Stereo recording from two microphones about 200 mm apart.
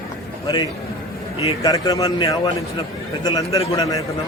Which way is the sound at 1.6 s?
15° left (ahead or behind).